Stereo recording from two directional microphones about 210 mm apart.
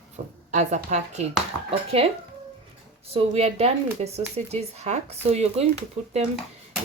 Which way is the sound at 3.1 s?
30° right (ahead or behind).